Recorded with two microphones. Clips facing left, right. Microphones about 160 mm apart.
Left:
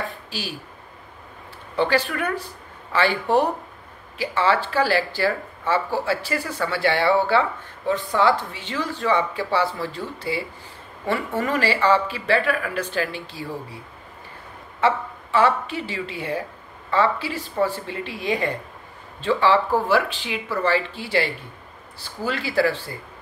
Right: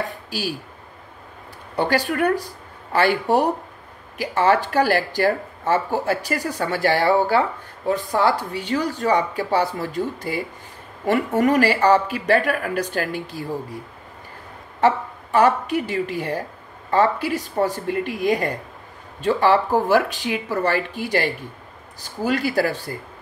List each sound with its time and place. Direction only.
0.3 s speech: 10° right (ahead or behind)
1.8 s speech: 40° right (ahead or behind)
2.4 s a sound: 40° right (ahead or behind)
4.2 s speech: 40° right (ahead or behind)
14.8 s a woman's voice: 40° right (ahead or behind)
22.0 s speech: 45° right (ahead or behind)